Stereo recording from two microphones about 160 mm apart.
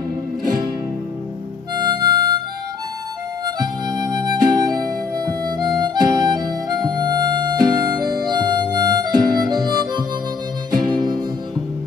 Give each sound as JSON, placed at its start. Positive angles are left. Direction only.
{"t": 1.8, "sound": "harmonica", "side_deg": -30}
{"t": 3.5, "sound": "music", "side_deg": -25}
{"t": 8.3, "sound": "harmonica", "side_deg": -25}
{"t": 10.7, "sound": "music", "side_deg": -25}